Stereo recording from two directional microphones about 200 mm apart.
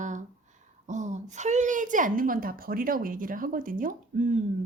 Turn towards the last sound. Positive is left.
turn(degrees=-40)  # may be behind; listen again after turning